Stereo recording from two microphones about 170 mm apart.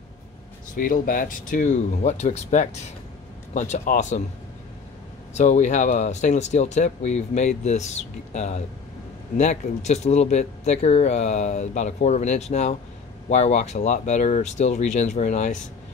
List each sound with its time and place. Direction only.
0.7 s speech: 55° left (ahead or behind)
5.3 s speech: 45° left (ahead or behind)